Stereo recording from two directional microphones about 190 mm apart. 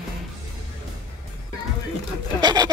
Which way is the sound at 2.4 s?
20° right (ahead or behind).